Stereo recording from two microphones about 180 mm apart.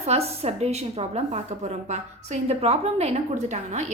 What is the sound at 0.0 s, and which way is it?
A woman's voice, 35° right (ahead or behind).